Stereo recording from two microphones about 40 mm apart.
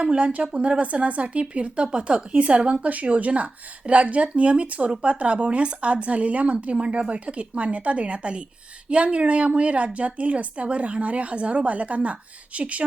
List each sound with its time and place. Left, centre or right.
0.0 s a woman's voice: right